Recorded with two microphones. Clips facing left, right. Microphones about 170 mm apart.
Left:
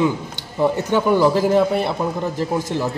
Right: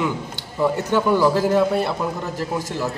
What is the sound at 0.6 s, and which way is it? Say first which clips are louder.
Speech: left 2 dB; 20° left (ahead or behind).